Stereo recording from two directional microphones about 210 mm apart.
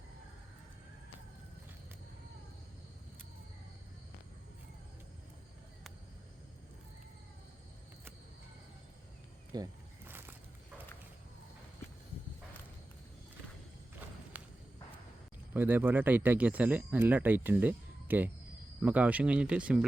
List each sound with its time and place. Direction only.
9.5 s speech: 20° right (ahead or behind)
10.1 s a sound: 10° right (ahead or behind)
14.3 s walk: 5° right (ahead or behind)
15.5 s speech: 10° right (ahead or behind)